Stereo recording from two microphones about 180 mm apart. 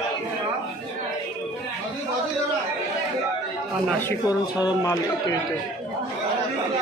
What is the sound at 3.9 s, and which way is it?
Speech, 10° left (ahead or behind).